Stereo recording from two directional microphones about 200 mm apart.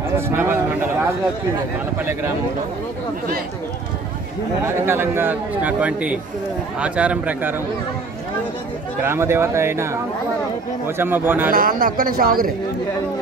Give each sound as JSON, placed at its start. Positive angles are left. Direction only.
{"t": 0.4, "sound": "a sound", "side_deg": -10}
{"t": 2.0, "sound": "a man's voice", "side_deg": -15}
{"t": 4.6, "sound": "a man's voice", "side_deg": -10}
{"t": 9.0, "sound": "a man's voice", "side_deg": -10}
{"t": 11.0, "sound": "a man's voice", "side_deg": -10}
{"t": 11.5, "sound": "speech", "side_deg": -45}